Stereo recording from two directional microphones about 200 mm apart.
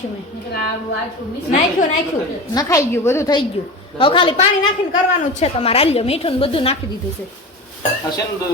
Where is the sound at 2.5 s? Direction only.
15° left (ahead or behind).